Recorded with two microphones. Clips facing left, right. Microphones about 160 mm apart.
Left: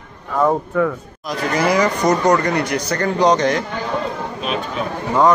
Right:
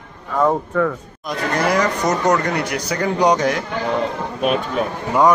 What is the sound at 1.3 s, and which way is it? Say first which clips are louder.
Speech: left 1 dB; centre (ahead or behind).